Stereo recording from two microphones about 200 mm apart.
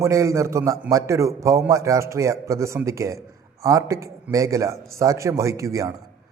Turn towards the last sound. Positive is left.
turn(degrees=-15)  # may be behind; listen again after turning